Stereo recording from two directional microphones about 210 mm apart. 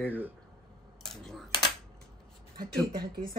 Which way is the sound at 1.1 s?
Centre (ahead or behind).